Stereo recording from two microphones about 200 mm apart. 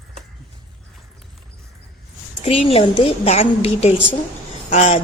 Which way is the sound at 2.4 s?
30° left (ahead or behind).